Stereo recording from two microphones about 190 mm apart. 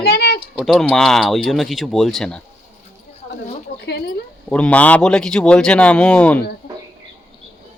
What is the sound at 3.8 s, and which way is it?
Speech, 60° left (ahead or behind).